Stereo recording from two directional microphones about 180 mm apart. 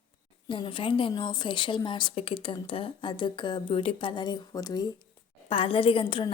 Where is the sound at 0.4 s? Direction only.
30° left (ahead or behind).